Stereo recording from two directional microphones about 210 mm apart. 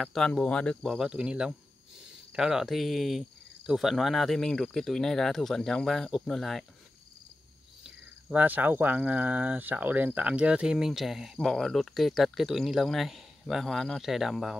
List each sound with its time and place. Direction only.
0.0 s speech: centre (ahead or behind)
7.8 s speech: 5° right (ahead or behind)